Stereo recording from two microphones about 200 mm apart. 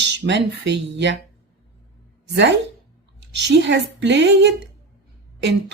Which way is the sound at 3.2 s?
60° right (ahead or behind).